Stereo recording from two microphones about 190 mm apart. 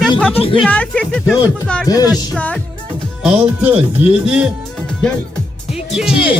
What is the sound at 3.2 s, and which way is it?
Speech, 10° right (ahead or behind).